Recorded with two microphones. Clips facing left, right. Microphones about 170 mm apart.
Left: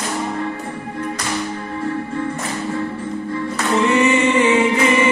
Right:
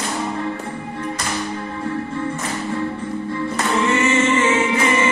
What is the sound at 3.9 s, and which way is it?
Music, 15° left (ahead or behind).